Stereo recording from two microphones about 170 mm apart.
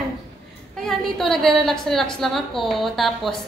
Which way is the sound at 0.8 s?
Centre (ahead or behind).